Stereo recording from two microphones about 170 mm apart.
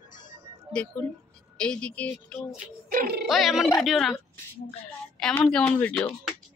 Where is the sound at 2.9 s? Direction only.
65° right (ahead or behind).